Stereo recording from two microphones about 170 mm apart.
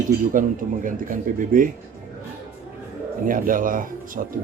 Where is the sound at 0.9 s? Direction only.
55° right (ahead or behind).